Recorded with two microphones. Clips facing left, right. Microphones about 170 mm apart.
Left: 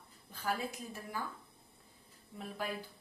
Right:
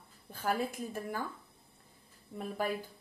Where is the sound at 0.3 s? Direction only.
50° right (ahead or behind).